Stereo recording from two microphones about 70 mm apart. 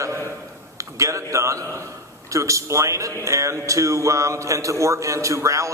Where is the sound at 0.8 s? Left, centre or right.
Right.